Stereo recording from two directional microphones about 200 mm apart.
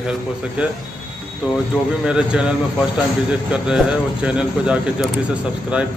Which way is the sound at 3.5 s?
5° right (ahead or behind).